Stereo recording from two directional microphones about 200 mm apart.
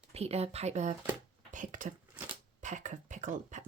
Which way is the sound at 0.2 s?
30° right (ahead or behind).